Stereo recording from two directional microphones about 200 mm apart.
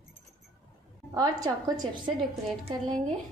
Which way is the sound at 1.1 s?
20° right (ahead or behind).